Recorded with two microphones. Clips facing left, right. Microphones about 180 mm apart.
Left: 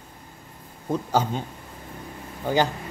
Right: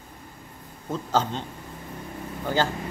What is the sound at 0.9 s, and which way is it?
Speech, 10° left (ahead or behind).